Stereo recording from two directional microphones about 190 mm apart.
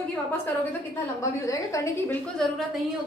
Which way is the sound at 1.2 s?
15° left (ahead or behind).